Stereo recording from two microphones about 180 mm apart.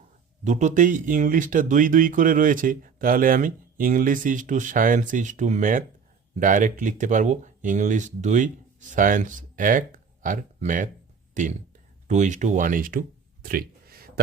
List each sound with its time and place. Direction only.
0.4 s speech: 40° right (ahead or behind)